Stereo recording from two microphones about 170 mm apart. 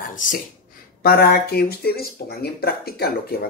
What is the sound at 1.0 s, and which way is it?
Speech, 70° left (ahead or behind).